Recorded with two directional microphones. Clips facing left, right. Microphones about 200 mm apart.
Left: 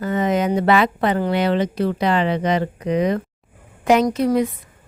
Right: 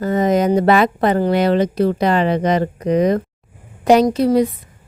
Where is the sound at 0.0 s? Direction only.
40° right (ahead or behind).